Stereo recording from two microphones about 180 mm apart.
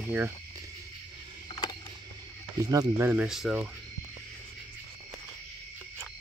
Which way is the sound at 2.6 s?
20° right (ahead or behind).